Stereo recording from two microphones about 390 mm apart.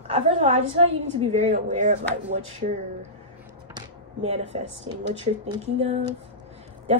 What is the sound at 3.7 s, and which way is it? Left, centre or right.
A woman's voice, centre.